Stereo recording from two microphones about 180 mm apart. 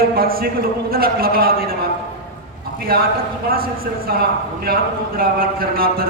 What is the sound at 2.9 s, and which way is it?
A man's voice, 60° right (ahead or behind).